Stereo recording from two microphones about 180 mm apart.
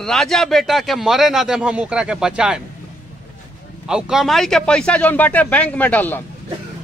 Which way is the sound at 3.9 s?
5° right (ahead or behind).